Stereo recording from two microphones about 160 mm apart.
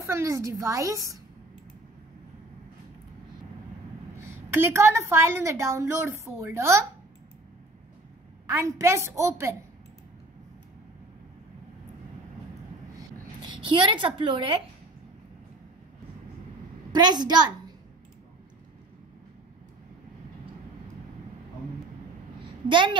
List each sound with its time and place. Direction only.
0.0 s a woman's voice: 20° right (ahead or behind)
4.2 s a woman's voice: 15° right (ahead or behind)
8.5 s a woman's voice: 20° right (ahead or behind)
13.4 s a child's voice: 30° right (ahead or behind)
16.9 s a woman's voice: 25° right (ahead or behind)
22.7 s a woman's voice: 30° right (ahead or behind)